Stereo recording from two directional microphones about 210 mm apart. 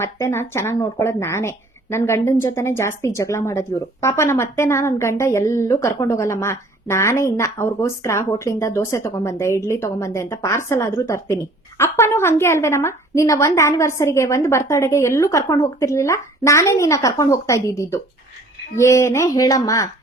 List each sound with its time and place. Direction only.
0.0 s speech: 10° left (ahead or behind)